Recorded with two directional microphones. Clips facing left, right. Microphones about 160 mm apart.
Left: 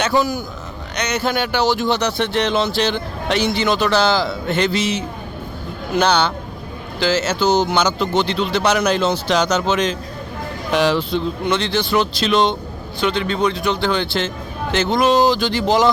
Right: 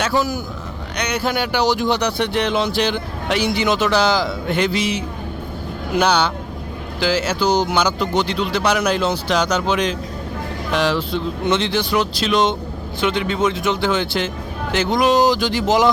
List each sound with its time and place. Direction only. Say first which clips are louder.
0.2 s speech: left 1 dB; 5° right (ahead or behind)
10.7 s speech: left 2 dB; centre (ahead or behind)
11.4 s speech: even; 20° right (ahead or behind)